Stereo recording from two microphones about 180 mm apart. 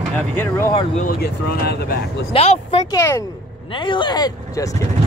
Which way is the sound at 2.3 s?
35° left (ahead or behind).